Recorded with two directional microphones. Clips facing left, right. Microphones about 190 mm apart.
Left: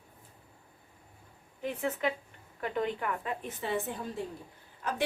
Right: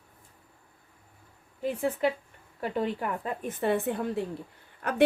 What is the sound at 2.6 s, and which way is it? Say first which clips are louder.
Speech: right 3 dB; 30° right (ahead or behind).